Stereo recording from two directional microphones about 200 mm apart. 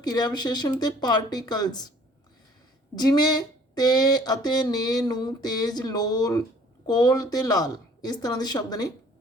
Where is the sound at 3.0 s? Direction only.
20° left (ahead or behind).